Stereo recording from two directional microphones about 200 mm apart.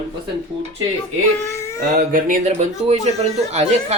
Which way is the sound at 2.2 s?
35° right (ahead or behind).